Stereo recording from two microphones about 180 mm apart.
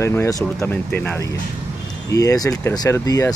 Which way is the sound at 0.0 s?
15° left (ahead or behind).